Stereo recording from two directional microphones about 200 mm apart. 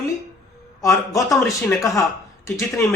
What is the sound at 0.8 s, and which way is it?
Speech, 15° left (ahead or behind).